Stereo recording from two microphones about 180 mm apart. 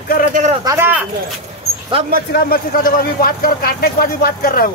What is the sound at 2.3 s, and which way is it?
Speech, 55° left (ahead or behind).